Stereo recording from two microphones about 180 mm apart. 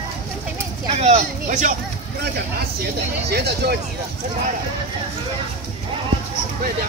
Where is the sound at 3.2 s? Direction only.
65° right (ahead or behind).